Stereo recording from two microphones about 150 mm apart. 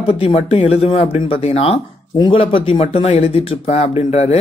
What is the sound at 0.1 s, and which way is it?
Speech, 40° left (ahead or behind).